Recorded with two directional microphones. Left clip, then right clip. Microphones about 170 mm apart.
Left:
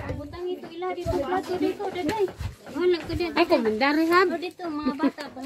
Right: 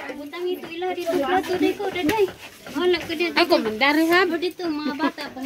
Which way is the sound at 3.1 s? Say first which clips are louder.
Right 3 dB; 65° left (ahead or behind).